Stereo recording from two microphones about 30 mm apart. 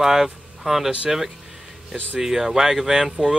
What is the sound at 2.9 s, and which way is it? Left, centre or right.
Speech, centre.